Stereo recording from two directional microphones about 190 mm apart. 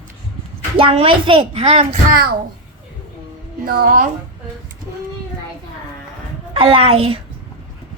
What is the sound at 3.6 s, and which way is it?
Speech, 50° right (ahead or behind).